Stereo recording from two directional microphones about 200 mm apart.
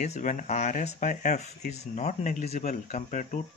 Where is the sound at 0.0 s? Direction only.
35° left (ahead or behind).